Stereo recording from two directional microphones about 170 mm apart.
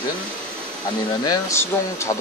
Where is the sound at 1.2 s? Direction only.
20° left (ahead or behind).